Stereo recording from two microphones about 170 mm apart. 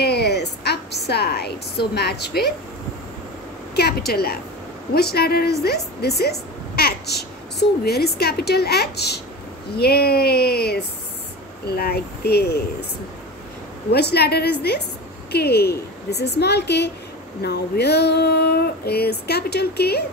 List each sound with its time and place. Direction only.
0.0 s a sound: 75° left (ahead or behind)
3.7 s female singing: 70° left (ahead or behind)
13.9 s female singing: 70° left (ahead or behind)